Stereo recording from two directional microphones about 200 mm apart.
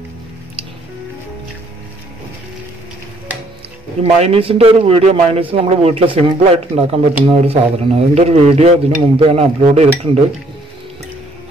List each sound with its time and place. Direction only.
4.0 s a man's voice: 30° right (ahead or behind)